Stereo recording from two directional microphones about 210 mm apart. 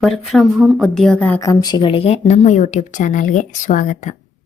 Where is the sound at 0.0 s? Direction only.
Centre (ahead or behind).